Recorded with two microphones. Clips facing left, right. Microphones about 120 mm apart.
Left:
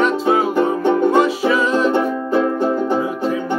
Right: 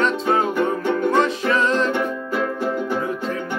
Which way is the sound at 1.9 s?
30° left (ahead or behind).